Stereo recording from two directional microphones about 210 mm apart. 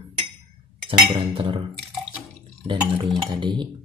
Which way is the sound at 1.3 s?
25° right (ahead or behind).